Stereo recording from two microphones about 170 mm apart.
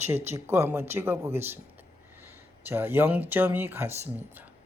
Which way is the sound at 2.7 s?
10° right (ahead or behind).